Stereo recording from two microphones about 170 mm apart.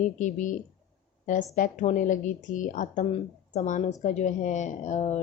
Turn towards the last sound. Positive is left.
turn(degrees=40)  # may be behind; listen again after turning